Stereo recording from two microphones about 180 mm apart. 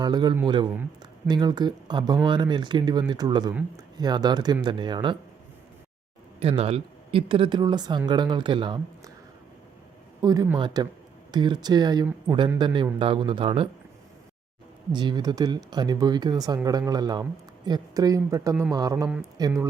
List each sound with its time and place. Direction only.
0.0 s speech: 25° right (ahead or behind)
6.4 s speech: 35° right (ahead or behind)
10.2 s a man's voice: 20° right (ahead or behind)
14.9 s speech: 25° right (ahead or behind)